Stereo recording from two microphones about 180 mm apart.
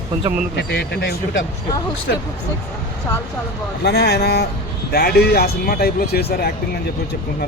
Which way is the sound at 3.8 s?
65° left (ahead or behind).